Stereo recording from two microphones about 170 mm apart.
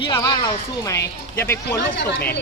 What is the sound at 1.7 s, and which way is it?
Speech, 70° left (ahead or behind).